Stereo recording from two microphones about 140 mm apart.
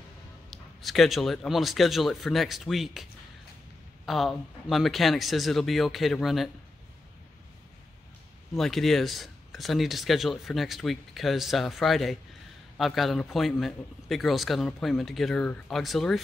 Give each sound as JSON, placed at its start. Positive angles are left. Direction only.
{"t": 0.5, "sound": "speech", "side_deg": 0}
{"t": 8.5, "sound": "speech", "side_deg": 0}